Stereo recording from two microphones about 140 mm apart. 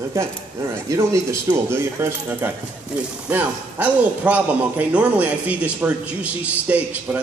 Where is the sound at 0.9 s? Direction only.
20° right (ahead or behind).